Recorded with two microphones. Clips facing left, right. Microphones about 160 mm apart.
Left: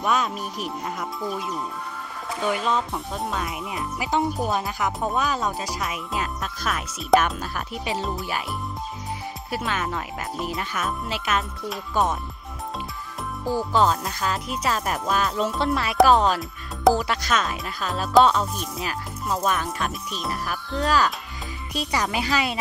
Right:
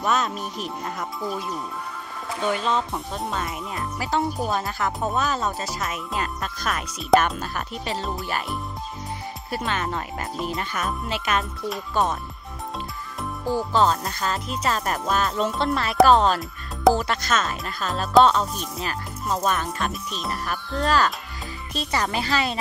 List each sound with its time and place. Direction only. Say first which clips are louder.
0.0 s speech: even; 5° left (ahead or behind)
2.4 s speech: even; 5° left (ahead or behind)
4.0 s speech: left 1 dB; 15° left (ahead or behind)
4.4 s speech: even; 5° left (ahead or behind)
13.5 s speech: even; 10° left (ahead or behind)